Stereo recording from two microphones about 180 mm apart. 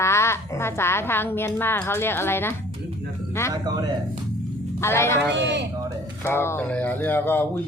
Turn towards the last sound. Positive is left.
turn(degrees=10)  # may be behind; listen again after turning